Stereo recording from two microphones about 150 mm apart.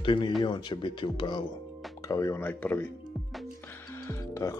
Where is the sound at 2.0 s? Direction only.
20° left (ahead or behind).